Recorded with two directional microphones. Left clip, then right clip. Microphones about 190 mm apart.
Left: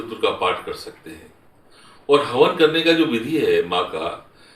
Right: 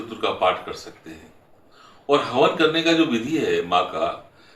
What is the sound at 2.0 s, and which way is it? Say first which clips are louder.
Speech: left 3 dB; 15° right (ahead or behind).